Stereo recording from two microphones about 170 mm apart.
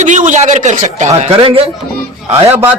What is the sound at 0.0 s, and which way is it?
A man's voice, 45° right (ahead or behind).